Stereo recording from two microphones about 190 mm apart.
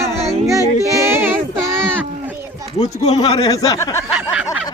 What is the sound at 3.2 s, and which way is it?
Speech, 20° left (ahead or behind).